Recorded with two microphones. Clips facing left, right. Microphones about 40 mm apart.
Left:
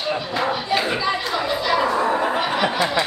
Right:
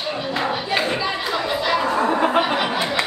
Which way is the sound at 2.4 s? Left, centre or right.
Centre.